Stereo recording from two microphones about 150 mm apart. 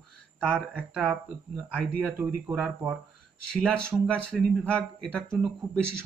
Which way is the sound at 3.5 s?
5° left (ahead or behind).